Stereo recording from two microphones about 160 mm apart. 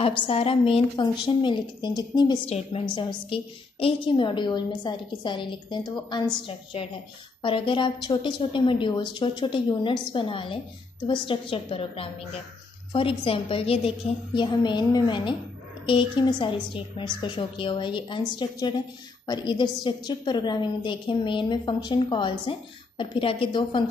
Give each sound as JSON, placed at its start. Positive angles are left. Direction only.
{"t": 0.0, "sound": "a woman's voice", "side_deg": 35}